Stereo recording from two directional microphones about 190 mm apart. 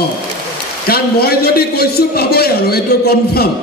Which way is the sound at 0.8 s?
55° left (ahead or behind).